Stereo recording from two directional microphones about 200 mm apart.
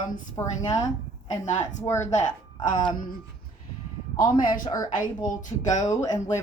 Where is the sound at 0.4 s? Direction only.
15° left (ahead or behind).